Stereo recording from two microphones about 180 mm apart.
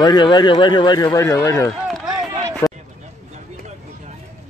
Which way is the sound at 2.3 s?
20° right (ahead or behind).